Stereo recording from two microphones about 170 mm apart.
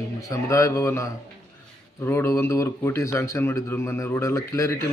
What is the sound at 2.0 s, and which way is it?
A man's voice, 15° left (ahead or behind).